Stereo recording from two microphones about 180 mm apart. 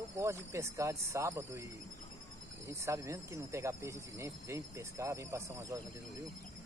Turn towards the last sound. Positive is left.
turn(degrees=-15)  # may be behind; listen again after turning